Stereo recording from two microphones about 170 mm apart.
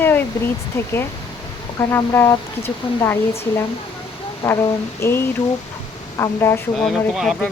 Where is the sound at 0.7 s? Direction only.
15° left (ahead or behind).